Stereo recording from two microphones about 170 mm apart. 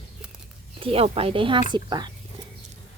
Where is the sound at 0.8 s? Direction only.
35° right (ahead or behind).